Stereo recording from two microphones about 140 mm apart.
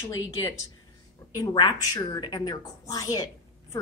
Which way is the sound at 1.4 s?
30° left (ahead or behind).